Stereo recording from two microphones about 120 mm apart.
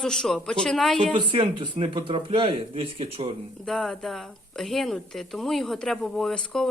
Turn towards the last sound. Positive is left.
turn(degrees=5)  # may be behind; listen again after turning